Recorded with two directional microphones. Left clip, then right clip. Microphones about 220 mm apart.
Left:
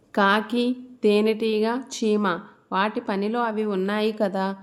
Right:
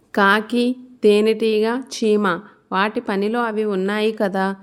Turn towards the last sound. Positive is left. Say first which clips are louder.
# right 4 dB
turn(degrees=-30)  # may be behind; listen again after turning